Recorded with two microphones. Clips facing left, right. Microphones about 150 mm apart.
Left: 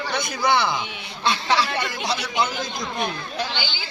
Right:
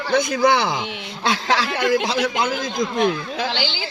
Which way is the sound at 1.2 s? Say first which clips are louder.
Right 1 dB; 90° right.